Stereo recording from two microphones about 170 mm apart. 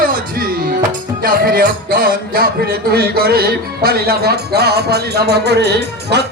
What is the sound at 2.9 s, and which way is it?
Music, 65° right (ahead or behind).